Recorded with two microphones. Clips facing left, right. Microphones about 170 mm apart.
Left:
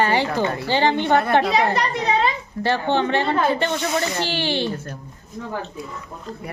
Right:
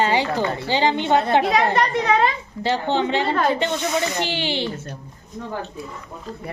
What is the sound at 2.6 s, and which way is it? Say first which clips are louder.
Speech: left 1 dB; 15° right (ahead or behind).